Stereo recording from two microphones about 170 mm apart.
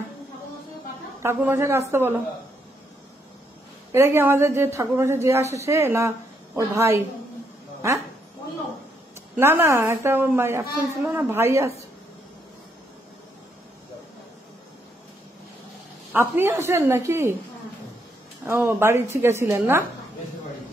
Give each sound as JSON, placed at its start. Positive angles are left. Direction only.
{"t": 1.2, "sound": "a woman's voice", "side_deg": -15}
{"t": 3.9, "sound": "a woman's voice", "side_deg": -15}
{"t": 9.4, "sound": "a woman's voice", "side_deg": -15}
{"t": 16.1, "sound": "a woman's voice", "side_deg": -10}
{"t": 18.4, "sound": "a woman's voice", "side_deg": -15}